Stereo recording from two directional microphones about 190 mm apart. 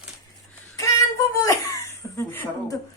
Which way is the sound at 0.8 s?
15° left (ahead or behind).